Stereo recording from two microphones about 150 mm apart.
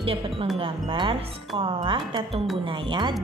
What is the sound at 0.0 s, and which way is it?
Speech, 35° right (ahead or behind).